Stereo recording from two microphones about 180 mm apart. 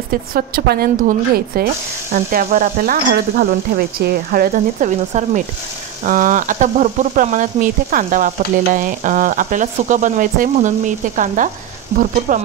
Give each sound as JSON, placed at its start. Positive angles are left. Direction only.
{"t": 0.1, "sound": "stir", "side_deg": -55}